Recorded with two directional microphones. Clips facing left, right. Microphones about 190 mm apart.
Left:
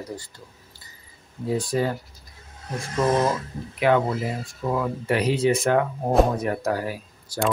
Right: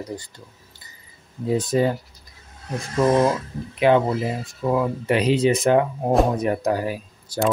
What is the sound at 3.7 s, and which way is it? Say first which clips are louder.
Speech: right 3 dB; 20° right (ahead or behind).